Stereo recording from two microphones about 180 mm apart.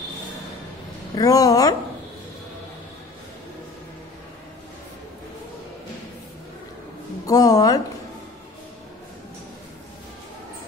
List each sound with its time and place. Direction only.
1.1 s a woman's voice: 20° left (ahead or behind)
7.2 s a woman's voice: 20° left (ahead or behind)